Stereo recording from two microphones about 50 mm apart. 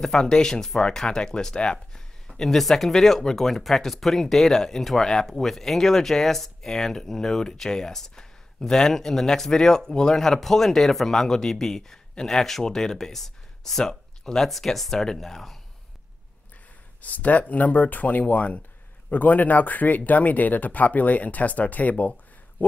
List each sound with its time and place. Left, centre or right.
0.0 s speech: centre
2.3 s speech: centre
17.0 s speech: left